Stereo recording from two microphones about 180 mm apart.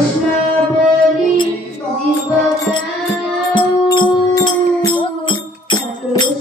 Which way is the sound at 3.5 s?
25° left (ahead or behind).